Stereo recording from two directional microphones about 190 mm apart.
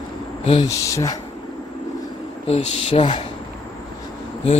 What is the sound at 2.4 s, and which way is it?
Speech, 30° left (ahead or behind).